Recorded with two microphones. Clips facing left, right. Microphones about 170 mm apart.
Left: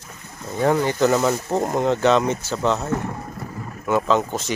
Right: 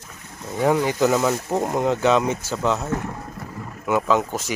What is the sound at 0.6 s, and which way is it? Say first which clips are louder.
Speech: even; 5° right (ahead or behind).